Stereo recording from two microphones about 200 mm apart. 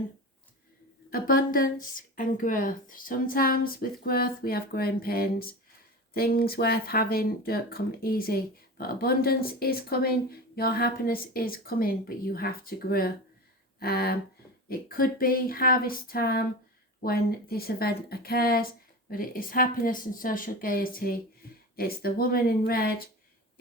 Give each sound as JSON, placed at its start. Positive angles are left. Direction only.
{"t": 1.1, "sound": "speech", "side_deg": 45}